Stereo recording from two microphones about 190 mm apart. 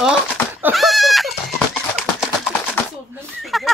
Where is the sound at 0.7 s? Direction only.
Centre (ahead or behind).